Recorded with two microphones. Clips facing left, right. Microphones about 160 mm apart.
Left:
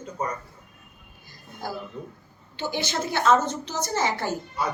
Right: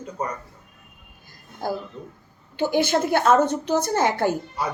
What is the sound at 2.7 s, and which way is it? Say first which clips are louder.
A woman's voice: right 8 dB; 55° right (ahead or behind).